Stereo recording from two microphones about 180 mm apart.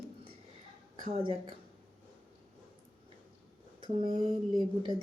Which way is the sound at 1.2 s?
25° right (ahead or behind).